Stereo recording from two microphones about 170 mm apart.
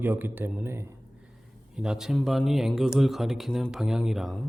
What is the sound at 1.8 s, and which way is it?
Speech, 5° right (ahead or behind).